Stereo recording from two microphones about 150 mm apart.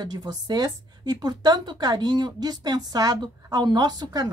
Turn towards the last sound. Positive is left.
turn(degrees=-25)  # may be behind; listen again after turning